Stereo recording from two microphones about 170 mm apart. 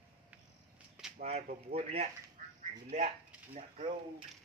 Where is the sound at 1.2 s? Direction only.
40° right (ahead or behind).